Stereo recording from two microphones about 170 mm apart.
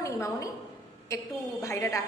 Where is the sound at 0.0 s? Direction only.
20° left (ahead or behind).